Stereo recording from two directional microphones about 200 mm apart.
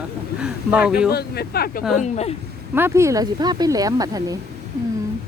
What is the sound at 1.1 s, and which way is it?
Speech, 50° left (ahead or behind).